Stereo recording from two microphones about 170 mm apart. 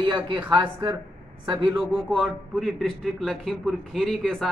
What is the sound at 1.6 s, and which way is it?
A man's voice, 5° right (ahead or behind).